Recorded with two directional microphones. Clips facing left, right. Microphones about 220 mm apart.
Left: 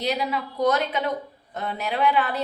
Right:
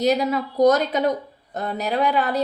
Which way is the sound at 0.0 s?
45° right (ahead or behind).